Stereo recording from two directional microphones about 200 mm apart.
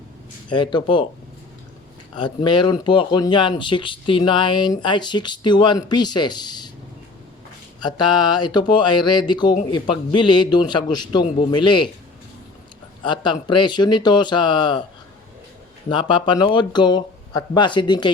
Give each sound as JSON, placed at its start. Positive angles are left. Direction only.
{"t": 0.5, "sound": "speech", "side_deg": 25}
{"t": 2.1, "sound": "speech", "side_deg": 25}
{"t": 7.9, "sound": "speech", "side_deg": 20}
{"t": 13.1, "sound": "speech", "side_deg": 25}
{"t": 15.9, "sound": "speech", "side_deg": 25}